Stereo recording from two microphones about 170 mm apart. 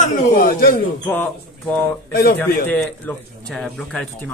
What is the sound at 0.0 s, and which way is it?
Speech, 55° left (ahead or behind).